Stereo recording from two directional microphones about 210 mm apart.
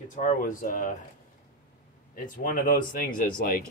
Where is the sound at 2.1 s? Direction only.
40° left (ahead or behind).